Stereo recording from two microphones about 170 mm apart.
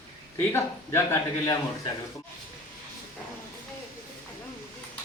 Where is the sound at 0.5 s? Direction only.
15° left (ahead or behind).